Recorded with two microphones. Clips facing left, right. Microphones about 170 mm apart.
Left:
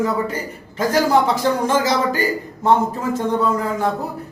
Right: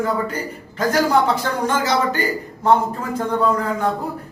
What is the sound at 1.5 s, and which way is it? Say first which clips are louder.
Speech: left 5 dB; 30° left (ahead or behind).